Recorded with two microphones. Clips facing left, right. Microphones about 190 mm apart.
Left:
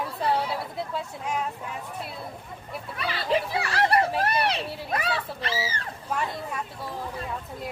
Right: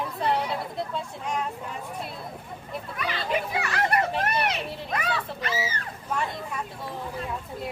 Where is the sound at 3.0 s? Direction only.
30° left (ahead or behind).